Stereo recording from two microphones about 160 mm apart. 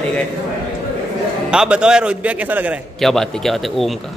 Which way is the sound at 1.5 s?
5° right (ahead or behind).